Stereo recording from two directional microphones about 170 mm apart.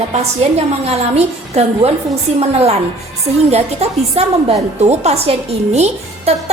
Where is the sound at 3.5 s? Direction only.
40° right (ahead or behind).